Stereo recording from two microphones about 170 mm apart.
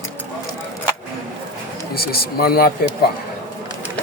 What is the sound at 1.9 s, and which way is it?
Speech, 65° left (ahead or behind).